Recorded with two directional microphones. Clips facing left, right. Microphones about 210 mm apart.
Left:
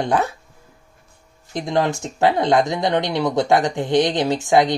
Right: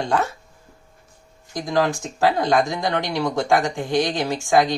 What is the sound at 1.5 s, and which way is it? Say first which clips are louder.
Speech: left 1 dB; 25° left (ahead or behind).